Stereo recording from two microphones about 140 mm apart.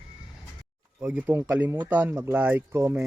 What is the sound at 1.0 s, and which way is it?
Speech, 15° right (ahead or behind).